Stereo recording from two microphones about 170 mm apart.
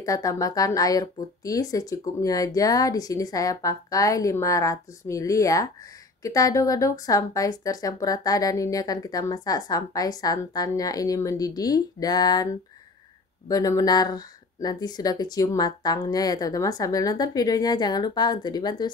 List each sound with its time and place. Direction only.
0.0 s a woman's voice: 20° left (ahead or behind)
13.5 s a woman's voice: 20° left (ahead or behind)